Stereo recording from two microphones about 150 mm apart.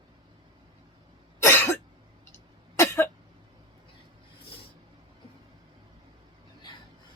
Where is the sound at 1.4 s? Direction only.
15° left (ahead or behind).